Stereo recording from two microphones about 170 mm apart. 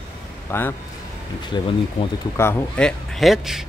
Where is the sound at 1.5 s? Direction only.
25° left (ahead or behind).